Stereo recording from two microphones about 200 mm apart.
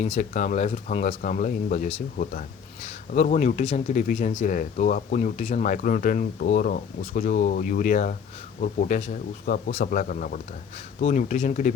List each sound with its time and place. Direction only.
0.0 s speech: 35° left (ahead or behind)